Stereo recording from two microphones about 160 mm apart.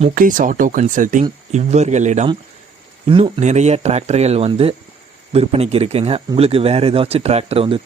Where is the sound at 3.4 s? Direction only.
45° right (ahead or behind).